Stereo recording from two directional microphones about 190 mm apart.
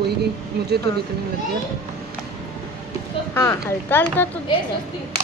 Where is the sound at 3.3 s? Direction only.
10° left (ahead or behind).